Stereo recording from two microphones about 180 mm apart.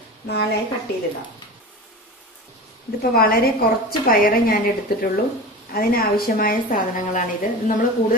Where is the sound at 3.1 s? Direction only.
55° left (ahead or behind).